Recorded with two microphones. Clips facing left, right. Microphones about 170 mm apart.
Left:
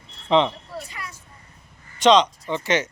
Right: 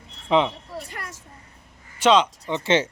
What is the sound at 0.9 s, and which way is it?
Speech, 60° right (ahead or behind).